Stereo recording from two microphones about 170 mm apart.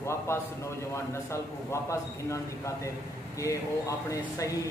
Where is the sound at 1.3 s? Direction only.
15° left (ahead or behind).